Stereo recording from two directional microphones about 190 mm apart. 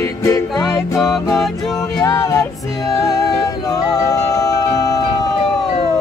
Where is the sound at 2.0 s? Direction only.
15° left (ahead or behind).